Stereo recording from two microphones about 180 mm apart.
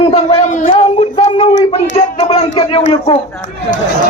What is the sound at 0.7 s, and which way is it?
Speech, 30° left (ahead or behind).